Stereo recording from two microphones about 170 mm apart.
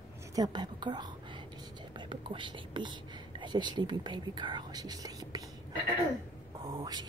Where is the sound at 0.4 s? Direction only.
25° right (ahead or behind).